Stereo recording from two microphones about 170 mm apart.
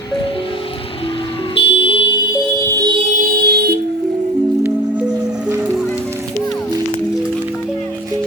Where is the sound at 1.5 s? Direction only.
35° left (ahead or behind).